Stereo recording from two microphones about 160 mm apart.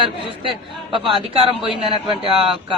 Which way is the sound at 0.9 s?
35° right (ahead or behind).